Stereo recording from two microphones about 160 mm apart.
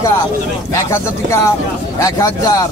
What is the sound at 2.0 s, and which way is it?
Speech, 20° left (ahead or behind).